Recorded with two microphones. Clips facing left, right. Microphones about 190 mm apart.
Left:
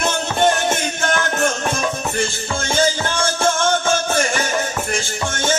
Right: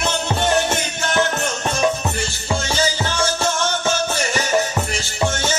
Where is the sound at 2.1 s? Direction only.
50° left (ahead or behind).